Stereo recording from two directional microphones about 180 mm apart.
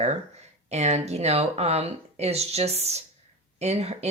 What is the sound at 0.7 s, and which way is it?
Speech, 35° right (ahead or behind).